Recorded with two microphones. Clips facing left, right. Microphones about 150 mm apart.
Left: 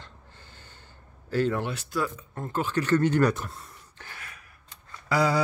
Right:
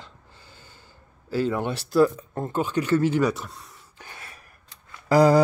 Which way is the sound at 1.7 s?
35° right (ahead or behind).